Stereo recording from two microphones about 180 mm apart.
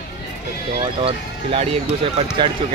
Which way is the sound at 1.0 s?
30° right (ahead or behind).